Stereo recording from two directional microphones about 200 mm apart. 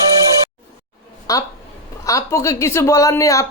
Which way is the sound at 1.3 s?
15° left (ahead or behind).